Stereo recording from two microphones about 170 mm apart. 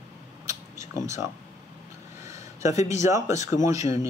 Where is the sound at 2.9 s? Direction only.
20° right (ahead or behind).